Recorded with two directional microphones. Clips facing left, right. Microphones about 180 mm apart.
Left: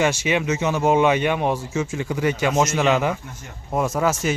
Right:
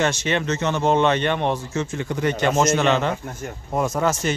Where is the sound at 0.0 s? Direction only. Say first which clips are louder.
Left 1 dB; 10° left (ahead or behind).